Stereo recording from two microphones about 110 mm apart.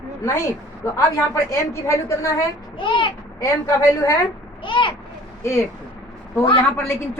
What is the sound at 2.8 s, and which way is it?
Speech, 50° left (ahead or behind).